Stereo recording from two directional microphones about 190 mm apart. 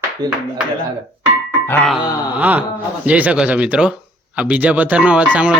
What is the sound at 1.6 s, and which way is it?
Grunt, 10° left (ahead or behind).